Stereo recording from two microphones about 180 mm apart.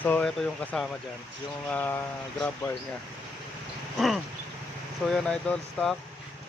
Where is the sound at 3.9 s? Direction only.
Centre (ahead or behind).